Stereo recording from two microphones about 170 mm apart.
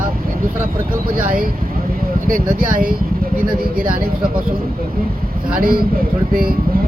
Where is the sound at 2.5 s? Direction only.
60° right (ahead or behind).